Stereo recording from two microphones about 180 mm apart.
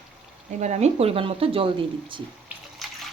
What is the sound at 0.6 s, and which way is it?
Speech, 40° right (ahead or behind).